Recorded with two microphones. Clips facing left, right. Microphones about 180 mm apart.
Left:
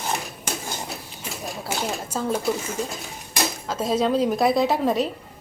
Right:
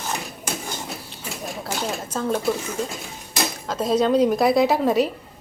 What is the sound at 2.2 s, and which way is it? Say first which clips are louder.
Speech: right 1 dB; 5° left (ahead or behind).